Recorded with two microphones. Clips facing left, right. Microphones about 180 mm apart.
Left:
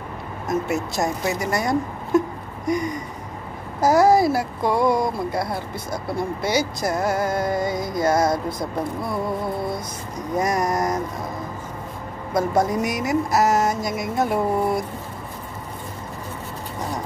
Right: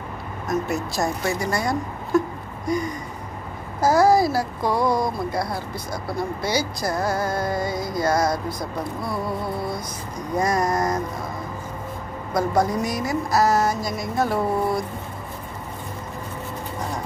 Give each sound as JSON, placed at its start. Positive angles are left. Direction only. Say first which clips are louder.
{"t": 0.5, "sound": "speech", "louder": "left 1 dB", "side_deg": 20}
{"t": 3.8, "sound": "speech", "louder": "left 1 dB", "side_deg": 20}
{"t": 10.3, "sound": "speech", "louder": "even", "side_deg": 20}
{"t": 12.4, "sound": "speech", "louder": "left 1 dB", "side_deg": 20}